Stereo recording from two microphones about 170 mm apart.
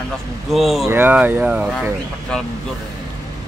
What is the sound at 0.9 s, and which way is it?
Speech, 10° right (ahead or behind).